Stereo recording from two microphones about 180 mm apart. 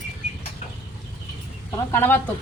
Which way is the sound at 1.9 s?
10° left (ahead or behind).